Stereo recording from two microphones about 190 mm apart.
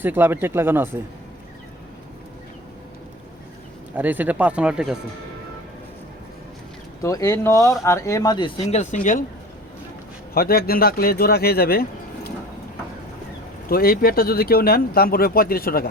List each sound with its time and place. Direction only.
0.0 s speech: 10° right (ahead or behind)
3.9 s speech: 10° right (ahead or behind)
7.0 s speech: 15° left (ahead or behind); by 9.2 s 45° left (ahead or behind)
10.3 s speech: 55° left (ahead or behind)
13.7 s speech: 50° left (ahead or behind)